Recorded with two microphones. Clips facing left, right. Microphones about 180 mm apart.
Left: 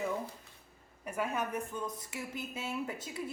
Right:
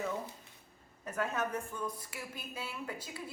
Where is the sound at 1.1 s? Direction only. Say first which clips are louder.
Even; 10° left (ahead or behind).